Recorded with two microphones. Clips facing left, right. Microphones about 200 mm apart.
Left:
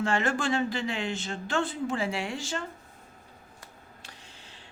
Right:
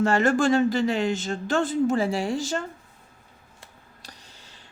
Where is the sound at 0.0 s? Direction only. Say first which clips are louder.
Right 7 dB; 45° right (ahead or behind).